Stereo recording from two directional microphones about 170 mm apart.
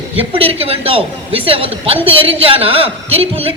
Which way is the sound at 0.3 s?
35° right (ahead or behind).